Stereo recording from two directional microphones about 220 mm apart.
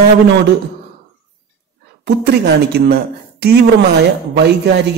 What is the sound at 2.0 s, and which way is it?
A man's voice, 50° right (ahead or behind).